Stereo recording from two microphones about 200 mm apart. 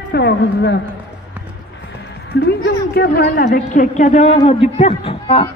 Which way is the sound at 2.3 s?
55° left (ahead or behind).